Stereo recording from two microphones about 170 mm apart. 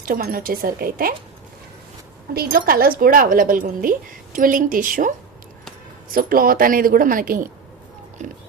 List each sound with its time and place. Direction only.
0.0 s speech: 60° right (ahead or behind)
2.3 s speech: 65° right (ahead or behind); by 8.4 s 45° right (ahead or behind)